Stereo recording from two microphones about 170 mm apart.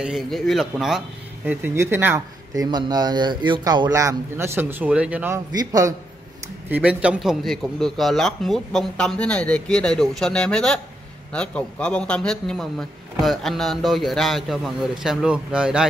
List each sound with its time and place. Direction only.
0.0 s speech: centre (ahead or behind)
5.5 s a man's voice: 20° right (ahead or behind)
6.7 s a man's voice: 10° right (ahead or behind)